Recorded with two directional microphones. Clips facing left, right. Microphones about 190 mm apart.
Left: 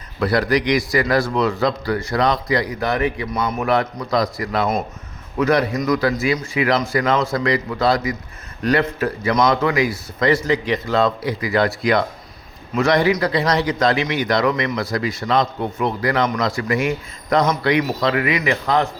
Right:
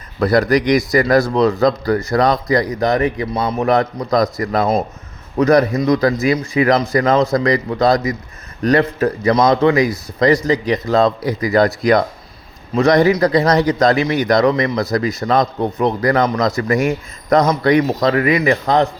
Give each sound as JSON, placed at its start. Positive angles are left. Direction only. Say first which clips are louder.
{"t": 0.2, "sound": "a man's voice", "louder": "right 4 dB", "side_deg": -45}